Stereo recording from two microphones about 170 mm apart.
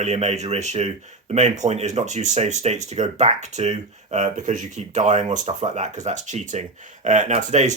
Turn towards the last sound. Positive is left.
turn(degrees=-45)  # may be behind; listen again after turning